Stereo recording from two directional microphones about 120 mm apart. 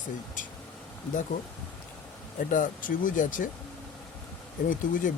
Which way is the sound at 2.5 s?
90° left.